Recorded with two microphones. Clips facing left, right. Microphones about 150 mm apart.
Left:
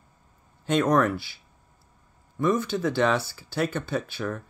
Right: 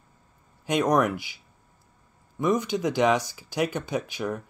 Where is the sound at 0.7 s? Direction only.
15° right (ahead or behind).